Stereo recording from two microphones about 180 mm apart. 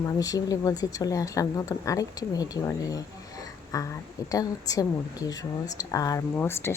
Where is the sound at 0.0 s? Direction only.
20° left (ahead or behind).